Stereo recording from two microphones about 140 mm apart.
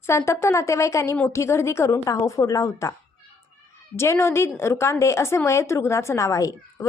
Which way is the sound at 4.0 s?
20° left (ahead or behind).